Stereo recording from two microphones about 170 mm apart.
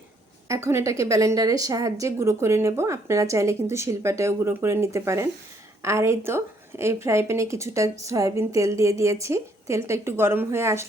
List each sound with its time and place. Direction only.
0.4 s a woman's voice: 15° right (ahead or behind)